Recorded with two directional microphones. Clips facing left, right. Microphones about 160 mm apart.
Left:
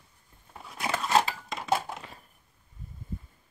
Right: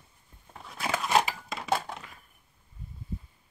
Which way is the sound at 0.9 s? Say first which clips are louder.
Left 1 dB; 15° right (ahead or behind).